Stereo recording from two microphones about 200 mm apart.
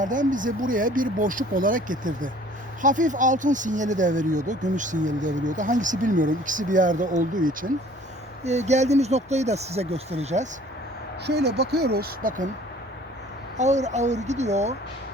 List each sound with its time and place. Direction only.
0.0 s speech: 40° right (ahead or behind)
11.3 s speech: 55° right (ahead or behind)
13.6 s speech: 35° right (ahead or behind)